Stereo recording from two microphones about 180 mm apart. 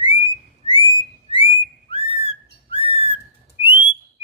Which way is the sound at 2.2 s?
30° left (ahead or behind).